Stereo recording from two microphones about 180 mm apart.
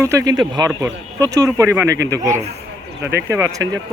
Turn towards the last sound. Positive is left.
turn(degrees=-20)  # may be behind; listen again after turning